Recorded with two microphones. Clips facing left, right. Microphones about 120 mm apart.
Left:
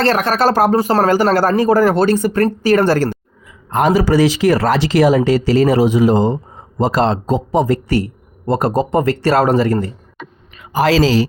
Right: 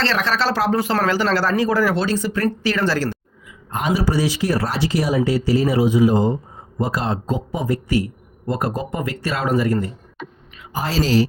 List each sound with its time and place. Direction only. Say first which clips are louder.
0.0 s speech: left 6 dB; 50° left (ahead or behind)
3.7 s a man's voice: left 7 dB; 80° left